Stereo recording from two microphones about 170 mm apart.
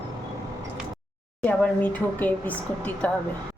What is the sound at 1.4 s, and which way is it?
Speech, 10° left (ahead or behind).